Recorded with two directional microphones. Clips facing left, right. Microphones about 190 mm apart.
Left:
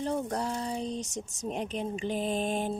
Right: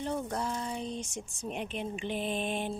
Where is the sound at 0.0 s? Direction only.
40° left (ahead or behind).